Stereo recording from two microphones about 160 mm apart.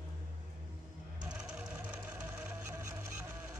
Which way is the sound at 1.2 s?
5° right (ahead or behind).